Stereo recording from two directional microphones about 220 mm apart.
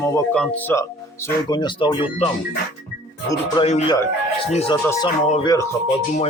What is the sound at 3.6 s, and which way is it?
Speech, 30° left (ahead or behind).